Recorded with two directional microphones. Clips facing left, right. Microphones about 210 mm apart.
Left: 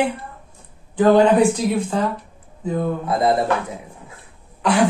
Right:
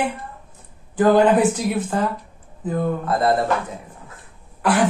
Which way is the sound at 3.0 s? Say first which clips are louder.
Left 2 dB; 15° left (ahead or behind).